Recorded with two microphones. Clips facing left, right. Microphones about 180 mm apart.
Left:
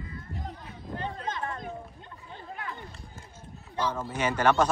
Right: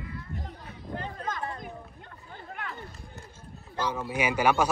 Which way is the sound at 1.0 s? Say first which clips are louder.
Left 1 dB; 25° left (ahead or behind).